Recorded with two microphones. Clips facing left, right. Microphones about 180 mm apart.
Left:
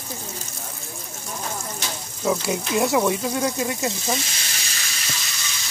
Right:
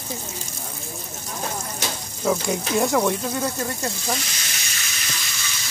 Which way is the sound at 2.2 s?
Centre (ahead or behind).